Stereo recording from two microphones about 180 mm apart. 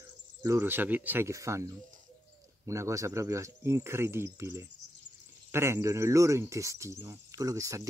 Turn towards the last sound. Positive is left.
turn(degrees=-20)  # may be behind; listen again after turning